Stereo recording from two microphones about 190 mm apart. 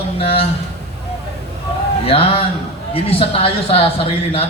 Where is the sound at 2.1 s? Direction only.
30° left (ahead or behind).